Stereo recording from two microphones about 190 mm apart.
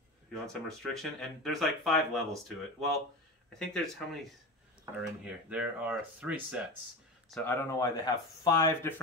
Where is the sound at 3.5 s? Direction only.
Centre (ahead or behind).